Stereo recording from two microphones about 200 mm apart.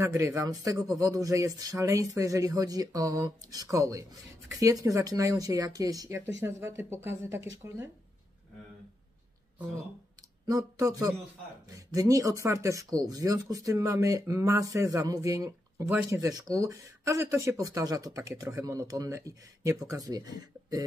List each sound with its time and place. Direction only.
0.0 s speech: 15° right (ahead or behind)
10.4 s speech: 20° right (ahead or behind)